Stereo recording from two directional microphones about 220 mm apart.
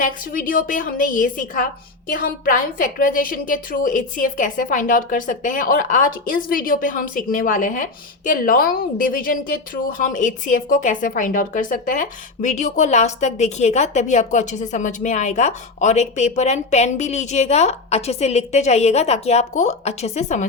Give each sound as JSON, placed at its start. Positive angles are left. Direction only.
{"t": 0.0, "sound": "a woman's voice", "side_deg": 40}